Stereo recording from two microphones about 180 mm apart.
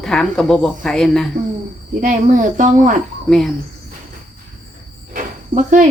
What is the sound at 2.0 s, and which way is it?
Speech, 45° right (ahead or behind).